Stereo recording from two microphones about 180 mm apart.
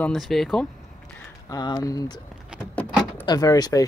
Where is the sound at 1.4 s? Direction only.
20° left (ahead or behind).